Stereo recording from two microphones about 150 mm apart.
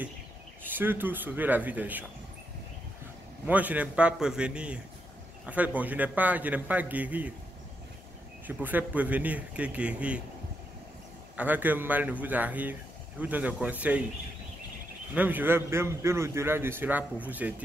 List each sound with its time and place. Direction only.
0.7 s a man's voice: 15° right (ahead or behind)
3.4 s a man's voice: 10° right (ahead or behind)
8.5 s a man's voice: 10° right (ahead or behind)
11.3 s a man's voice: 10° right (ahead or behind)
15.1 s a man's voice: 10° right (ahead or behind)